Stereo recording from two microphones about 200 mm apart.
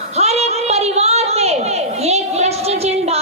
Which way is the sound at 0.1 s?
30° right (ahead or behind).